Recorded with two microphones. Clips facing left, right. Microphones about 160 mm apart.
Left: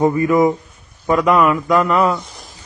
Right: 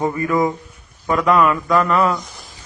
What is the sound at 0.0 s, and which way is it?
A man's voice, 20° left (ahead or behind).